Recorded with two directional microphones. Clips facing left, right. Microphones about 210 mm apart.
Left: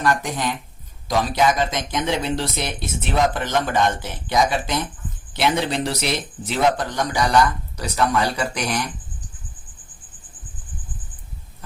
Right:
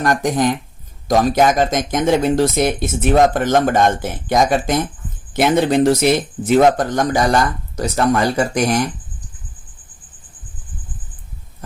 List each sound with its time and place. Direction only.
0.0 s speech: 45° right (ahead or behind)